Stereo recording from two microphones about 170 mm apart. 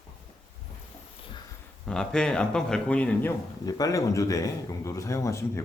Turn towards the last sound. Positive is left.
turn(degrees=15)  # may be behind; listen again after turning